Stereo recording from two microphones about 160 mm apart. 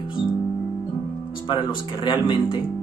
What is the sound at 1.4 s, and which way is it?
Speech, 30° left (ahead or behind).